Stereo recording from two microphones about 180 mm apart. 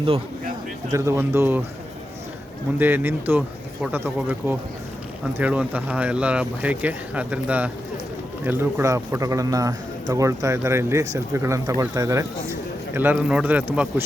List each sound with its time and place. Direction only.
0.9 s a man's voice: 15° right (ahead or behind)
2.7 s a man's voice: 10° right (ahead or behind)